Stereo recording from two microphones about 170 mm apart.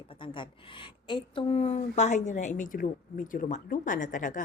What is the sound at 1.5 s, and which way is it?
A woman's voice, 40° left (ahead or behind).